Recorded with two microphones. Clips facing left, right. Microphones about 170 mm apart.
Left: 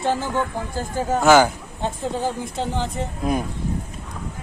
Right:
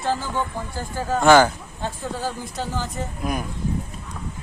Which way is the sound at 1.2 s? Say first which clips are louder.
Even; 10° left (ahead or behind).